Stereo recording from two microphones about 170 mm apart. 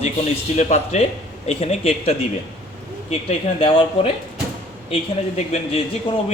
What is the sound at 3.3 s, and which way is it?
Speech, 35° left (ahead or behind).